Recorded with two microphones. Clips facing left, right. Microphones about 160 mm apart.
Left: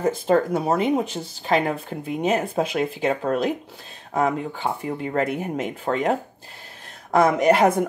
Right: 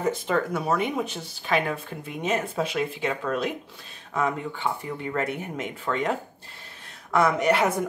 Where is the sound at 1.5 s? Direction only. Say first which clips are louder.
Left 4 dB; 35° left (ahead or behind).